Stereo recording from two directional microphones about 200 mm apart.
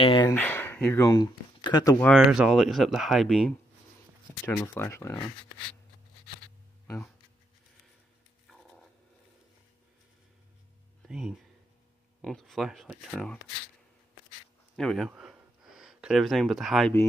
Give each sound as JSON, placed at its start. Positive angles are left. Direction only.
{"t": 0.0, "sound": "speech", "side_deg": 25}
{"t": 0.3, "sound": "speech", "side_deg": 10}
{"t": 2.0, "sound": "speech", "side_deg": 0}
{"t": 8.5, "sound": "dog", "side_deg": 0}
{"t": 11.1, "sound": "speech", "side_deg": -5}
{"t": 14.8, "sound": "a sound", "side_deg": 0}